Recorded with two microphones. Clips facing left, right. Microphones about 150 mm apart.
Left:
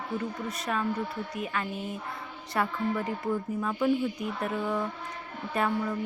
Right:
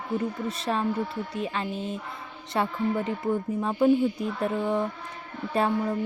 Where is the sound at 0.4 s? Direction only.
25° right (ahead or behind).